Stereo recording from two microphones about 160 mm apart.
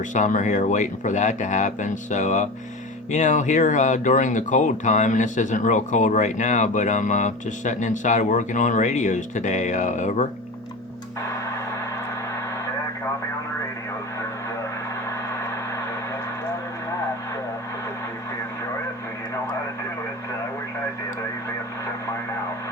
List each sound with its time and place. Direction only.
0.1 s speech: 50° left (ahead or behind)